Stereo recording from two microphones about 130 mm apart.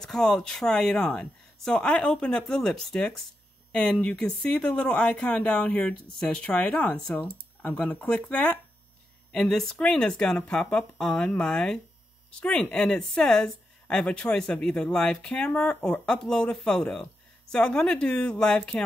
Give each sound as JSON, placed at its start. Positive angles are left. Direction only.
{"t": 0.0, "sound": "speech", "side_deg": 5}